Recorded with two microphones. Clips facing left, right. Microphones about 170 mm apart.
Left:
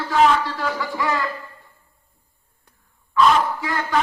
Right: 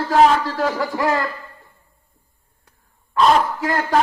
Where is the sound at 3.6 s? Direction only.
45° right (ahead or behind).